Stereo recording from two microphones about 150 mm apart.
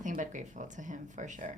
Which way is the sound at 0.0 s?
55° right (ahead or behind).